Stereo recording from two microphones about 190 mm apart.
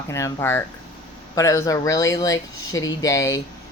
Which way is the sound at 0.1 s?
15° left (ahead or behind).